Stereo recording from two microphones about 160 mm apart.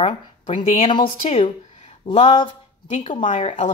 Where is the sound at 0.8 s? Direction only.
30° left (ahead or behind).